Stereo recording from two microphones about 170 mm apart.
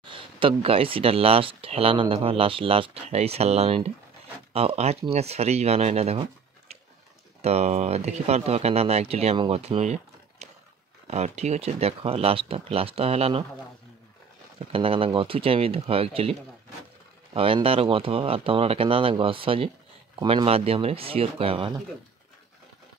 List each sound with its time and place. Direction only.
0.0 s speech: 30° right (ahead or behind)
7.4 s speech: 40° right (ahead or behind)
10.4 s a sound: 40° right (ahead or behind)
11.1 s speech: 40° right (ahead or behind)
14.6 s speech: 35° right (ahead or behind)